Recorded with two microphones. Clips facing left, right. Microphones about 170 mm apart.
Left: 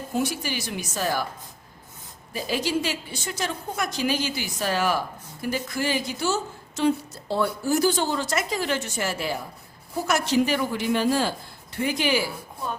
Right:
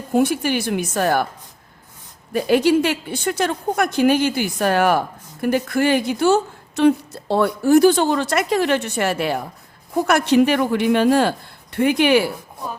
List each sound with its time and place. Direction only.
0.1 s a woman's voice: 55° right (ahead or behind)
2.3 s a woman's voice: 60° right (ahead or behind)